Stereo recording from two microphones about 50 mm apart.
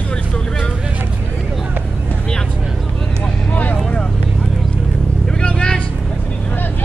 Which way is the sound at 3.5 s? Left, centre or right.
Left.